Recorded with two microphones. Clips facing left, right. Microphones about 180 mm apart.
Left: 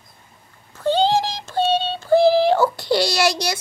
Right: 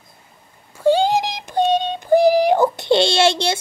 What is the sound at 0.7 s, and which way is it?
Synthetic singing, 10° right (ahead or behind).